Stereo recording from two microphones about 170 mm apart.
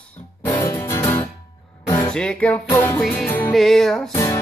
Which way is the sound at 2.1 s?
5° left (ahead or behind).